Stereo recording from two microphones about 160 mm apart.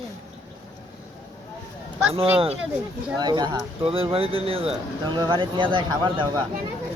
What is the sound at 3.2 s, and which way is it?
Speech, 25° right (ahead or behind).